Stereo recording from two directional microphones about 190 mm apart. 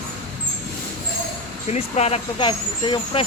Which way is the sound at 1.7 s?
35° left (ahead or behind).